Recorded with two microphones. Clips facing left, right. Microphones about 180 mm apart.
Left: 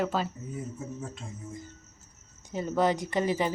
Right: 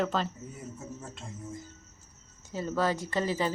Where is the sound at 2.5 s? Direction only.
20° left (ahead or behind).